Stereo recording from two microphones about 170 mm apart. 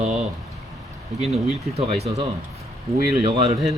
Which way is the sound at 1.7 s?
40° right (ahead or behind).